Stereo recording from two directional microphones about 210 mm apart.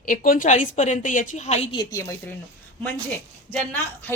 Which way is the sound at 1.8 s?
15° left (ahead or behind).